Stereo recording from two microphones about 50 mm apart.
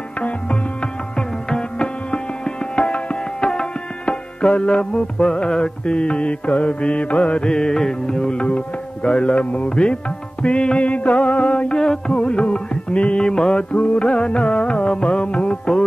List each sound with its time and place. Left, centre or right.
1.1 s music: centre